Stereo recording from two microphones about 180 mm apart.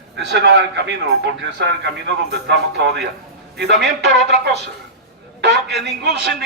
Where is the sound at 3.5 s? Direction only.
65° right (ahead or behind).